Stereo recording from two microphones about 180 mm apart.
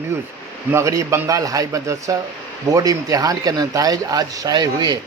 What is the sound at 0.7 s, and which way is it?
A man's voice, 15° right (ahead or behind).